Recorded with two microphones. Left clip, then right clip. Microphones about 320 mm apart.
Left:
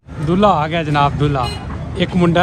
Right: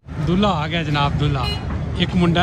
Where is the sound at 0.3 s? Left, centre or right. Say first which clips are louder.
Left 7 dB; centre.